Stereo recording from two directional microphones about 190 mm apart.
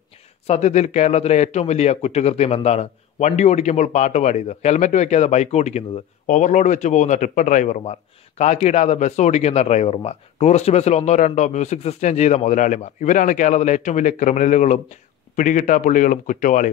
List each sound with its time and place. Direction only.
0.5 s speech: 35° left (ahead or behind)